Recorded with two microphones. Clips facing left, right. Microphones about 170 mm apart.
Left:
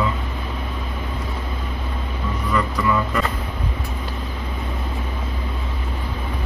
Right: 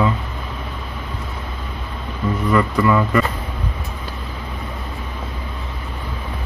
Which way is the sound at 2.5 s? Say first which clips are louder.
Right 4 dB; 65° right (ahead or behind).